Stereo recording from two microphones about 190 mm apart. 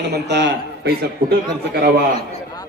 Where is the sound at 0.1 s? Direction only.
65° right (ahead or behind).